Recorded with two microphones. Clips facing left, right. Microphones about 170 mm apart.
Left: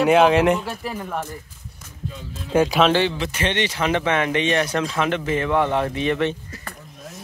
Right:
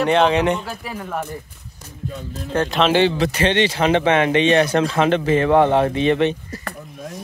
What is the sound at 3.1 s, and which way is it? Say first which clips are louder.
Speech: right 6 dB; 35° right (ahead or behind).